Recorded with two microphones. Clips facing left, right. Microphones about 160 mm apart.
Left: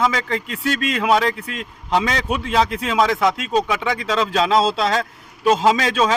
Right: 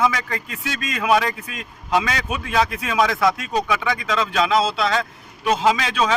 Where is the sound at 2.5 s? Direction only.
30° left (ahead or behind).